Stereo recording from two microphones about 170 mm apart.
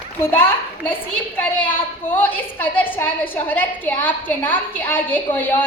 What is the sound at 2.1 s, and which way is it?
A woman's voice, 10° left (ahead or behind).